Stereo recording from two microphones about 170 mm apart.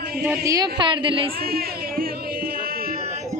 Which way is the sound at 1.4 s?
65° right (ahead or behind).